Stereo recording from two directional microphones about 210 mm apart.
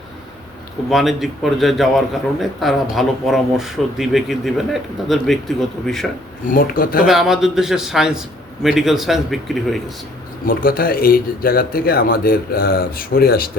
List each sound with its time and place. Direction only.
0.9 s speech: centre (ahead or behind)
6.4 s speech: 40° left (ahead or behind)
7.1 s speech: centre (ahead or behind)
10.4 s speech: 45° left (ahead or behind)